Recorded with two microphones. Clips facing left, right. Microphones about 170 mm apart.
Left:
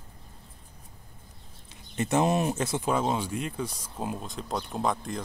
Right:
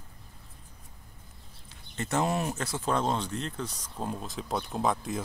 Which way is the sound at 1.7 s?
20° left (ahead or behind).